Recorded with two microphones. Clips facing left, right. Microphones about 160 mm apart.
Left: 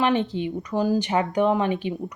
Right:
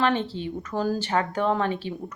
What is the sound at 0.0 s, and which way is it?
Speech, 15° left (ahead or behind).